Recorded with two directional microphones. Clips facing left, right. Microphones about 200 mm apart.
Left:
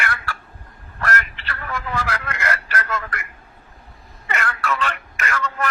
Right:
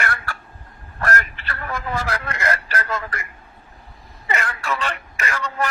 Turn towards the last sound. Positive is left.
turn(degrees=-35)  # may be behind; listen again after turning